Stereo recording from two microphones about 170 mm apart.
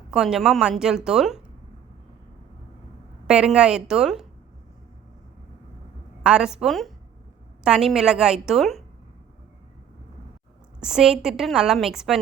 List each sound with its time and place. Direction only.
0.1 s a woman's voice: 5° right (ahead or behind)
3.2 s a woman's voice: 5° right (ahead or behind)
6.2 s a woman's voice: 5° right (ahead or behind)
10.8 s a woman's voice: 5° right (ahead or behind)